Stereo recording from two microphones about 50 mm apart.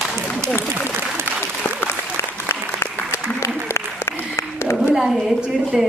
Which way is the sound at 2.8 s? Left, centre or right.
Left.